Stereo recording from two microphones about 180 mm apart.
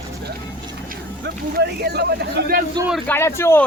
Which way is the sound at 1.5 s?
65° right (ahead or behind).